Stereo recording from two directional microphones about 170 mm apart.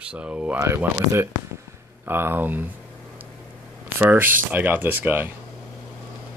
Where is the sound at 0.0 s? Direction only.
5° right (ahead or behind).